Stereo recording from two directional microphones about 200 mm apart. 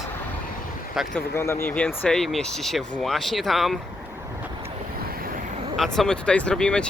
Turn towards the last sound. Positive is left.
turn(degrees=5)  # may be behind; listen again after turning